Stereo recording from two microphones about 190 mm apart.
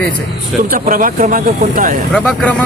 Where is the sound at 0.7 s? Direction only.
45° right (ahead or behind).